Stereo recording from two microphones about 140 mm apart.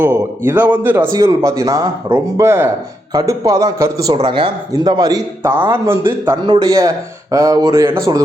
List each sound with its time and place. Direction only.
0.0 s a man's voice: 15° right (ahead or behind)
1.1 s a man's voice: 30° right (ahead or behind)
4.2 s speech: 40° right (ahead or behind)
4.7 s a man's voice: 30° right (ahead or behind)
6.4 s a man's voice: 30° right (ahead or behind)